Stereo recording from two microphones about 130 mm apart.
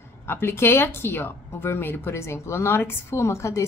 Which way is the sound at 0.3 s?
15° left (ahead or behind).